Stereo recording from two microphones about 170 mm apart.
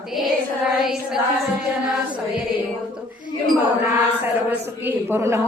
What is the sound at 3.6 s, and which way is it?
Mantra, 10° right (ahead or behind).